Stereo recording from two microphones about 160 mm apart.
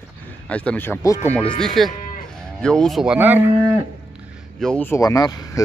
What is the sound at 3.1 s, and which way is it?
Speech, 10° right (ahead or behind).